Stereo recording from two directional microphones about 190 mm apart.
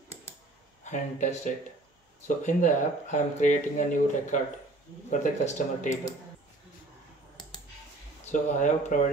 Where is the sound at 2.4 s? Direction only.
40° left (ahead or behind).